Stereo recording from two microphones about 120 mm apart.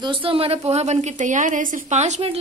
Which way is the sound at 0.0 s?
45° right (ahead or behind).